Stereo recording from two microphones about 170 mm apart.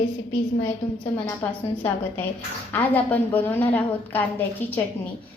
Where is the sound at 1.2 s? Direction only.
10° left (ahead or behind).